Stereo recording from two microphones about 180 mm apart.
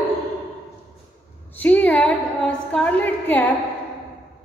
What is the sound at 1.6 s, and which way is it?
A woman's voice, 10° left (ahead or behind).